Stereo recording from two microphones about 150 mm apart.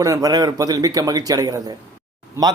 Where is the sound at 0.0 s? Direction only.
25° right (ahead or behind).